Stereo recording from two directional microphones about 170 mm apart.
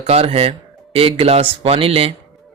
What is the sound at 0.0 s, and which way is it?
Speech, 35° right (ahead or behind).